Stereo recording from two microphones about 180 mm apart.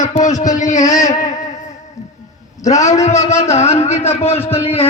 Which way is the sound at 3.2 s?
40° left (ahead or behind).